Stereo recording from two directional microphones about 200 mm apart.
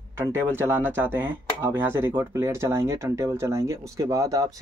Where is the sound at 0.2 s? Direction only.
10° right (ahead or behind).